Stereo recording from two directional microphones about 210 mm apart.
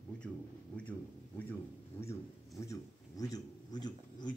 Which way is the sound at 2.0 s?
15° left (ahead or behind).